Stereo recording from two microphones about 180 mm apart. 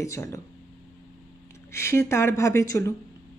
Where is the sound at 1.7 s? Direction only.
15° left (ahead or behind).